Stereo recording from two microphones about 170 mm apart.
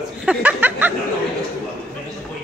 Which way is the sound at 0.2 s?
10° right (ahead or behind).